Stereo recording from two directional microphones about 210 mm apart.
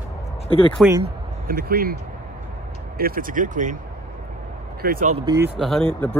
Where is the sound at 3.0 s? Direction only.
45° right (ahead or behind).